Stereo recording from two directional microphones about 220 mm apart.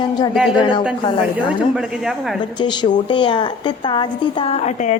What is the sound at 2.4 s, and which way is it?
Speech, 20° left (ahead or behind).